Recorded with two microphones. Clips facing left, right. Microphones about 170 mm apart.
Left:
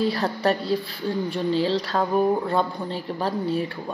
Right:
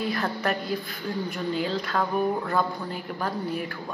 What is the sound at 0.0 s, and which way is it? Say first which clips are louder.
Speech: left 5 dB; 35° left (ahead or behind).